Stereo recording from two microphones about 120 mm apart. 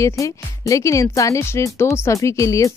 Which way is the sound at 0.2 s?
25° left (ahead or behind).